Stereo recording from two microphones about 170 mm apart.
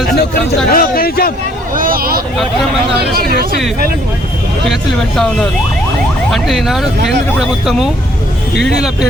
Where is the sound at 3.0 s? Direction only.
65° right (ahead or behind).